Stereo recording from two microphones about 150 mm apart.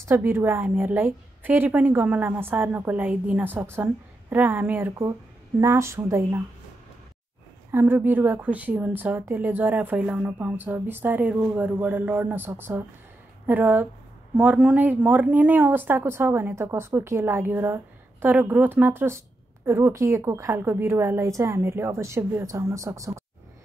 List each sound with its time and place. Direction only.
0.0 s a woman's voice: 15° right (ahead or behind)
7.7 s a woman's voice: 15° right (ahead or behind)